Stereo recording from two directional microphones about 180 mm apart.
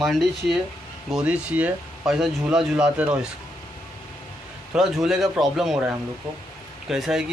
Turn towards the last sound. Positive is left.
turn(degrees=-5)  # may be behind; listen again after turning